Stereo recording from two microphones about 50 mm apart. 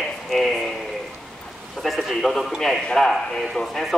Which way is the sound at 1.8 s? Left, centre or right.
Centre.